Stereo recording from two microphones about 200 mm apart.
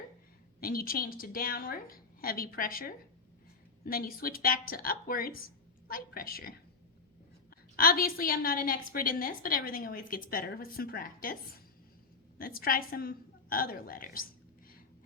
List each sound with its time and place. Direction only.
0.6 s a woman's voice: 45° left (ahead or behind)
7.8 s a woman's voice: 45° left (ahead or behind)